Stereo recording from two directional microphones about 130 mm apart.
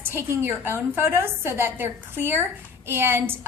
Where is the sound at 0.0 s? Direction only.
15° right (ahead or behind).